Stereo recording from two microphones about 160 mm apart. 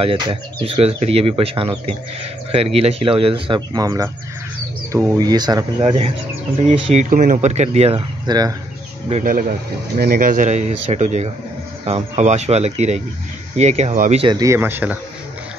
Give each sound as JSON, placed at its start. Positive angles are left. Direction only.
{"t": 0.0, "sound": "speech", "side_deg": -35}
{"t": 8.3, "sound": "speech", "side_deg": -25}
{"t": 9.2, "sound": "a man's voice", "side_deg": -60}
{"t": 14.3, "sound": "speech", "side_deg": -20}